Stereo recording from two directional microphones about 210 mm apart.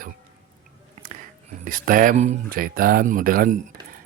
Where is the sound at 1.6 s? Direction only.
40° right (ahead or behind).